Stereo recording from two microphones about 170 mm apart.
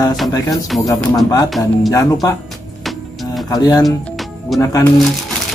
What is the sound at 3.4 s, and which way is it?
Speech, 20° left (ahead or behind).